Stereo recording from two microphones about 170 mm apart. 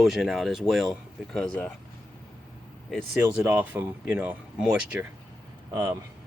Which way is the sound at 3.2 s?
15° right (ahead or behind).